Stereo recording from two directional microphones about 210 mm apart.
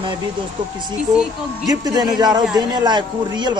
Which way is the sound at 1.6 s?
20° right (ahead or behind).